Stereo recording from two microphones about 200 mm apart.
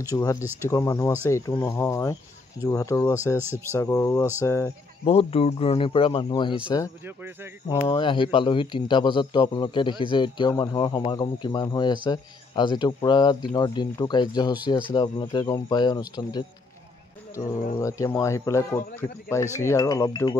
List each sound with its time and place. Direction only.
0.1 s speech: 15° left (ahead or behind)
3.3 s speech: 10° right (ahead or behind)
3.7 s speech: 15° left (ahead or behind)
5.0 s speech: 30° left (ahead or behind)
7.1 s speech: 10° right (ahead or behind)
7.6 s speech: 25° left (ahead or behind)
17.7 s speech: 15° left (ahead or behind)